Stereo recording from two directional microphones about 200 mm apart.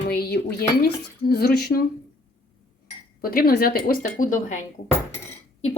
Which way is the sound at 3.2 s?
50° left (ahead or behind).